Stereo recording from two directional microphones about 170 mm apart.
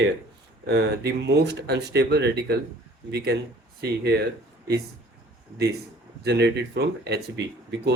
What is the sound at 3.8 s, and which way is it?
Speech, 80° right.